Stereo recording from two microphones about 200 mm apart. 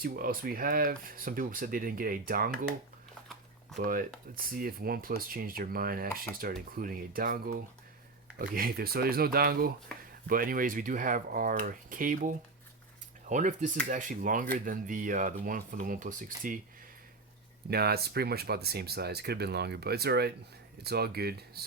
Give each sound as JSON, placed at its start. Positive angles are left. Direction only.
{"t": 0.0, "sound": "speech", "side_deg": -45}
{"t": 3.8, "sound": "speech", "side_deg": -45}
{"t": 17.7, "sound": "speech", "side_deg": -50}